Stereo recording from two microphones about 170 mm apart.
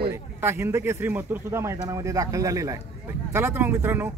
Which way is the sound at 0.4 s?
15° right (ahead or behind).